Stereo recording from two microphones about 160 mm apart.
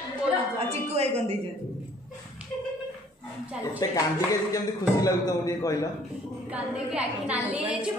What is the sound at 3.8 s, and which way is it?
Speech, 25° left (ahead or behind).